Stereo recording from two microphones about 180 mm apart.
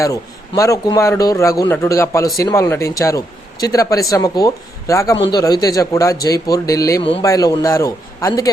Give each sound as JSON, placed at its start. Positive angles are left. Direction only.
{"t": 0.0, "sound": "a man's voice", "side_deg": 20}